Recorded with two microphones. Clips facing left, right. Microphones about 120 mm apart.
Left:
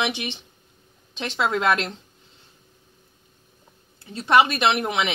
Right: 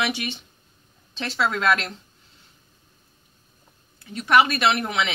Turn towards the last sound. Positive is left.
turn(degrees=20)  # may be behind; listen again after turning